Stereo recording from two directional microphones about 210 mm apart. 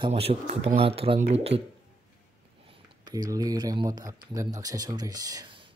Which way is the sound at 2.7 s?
20° right (ahead or behind).